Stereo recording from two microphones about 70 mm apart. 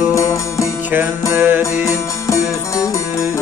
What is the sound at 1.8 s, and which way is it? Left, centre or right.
Music, left.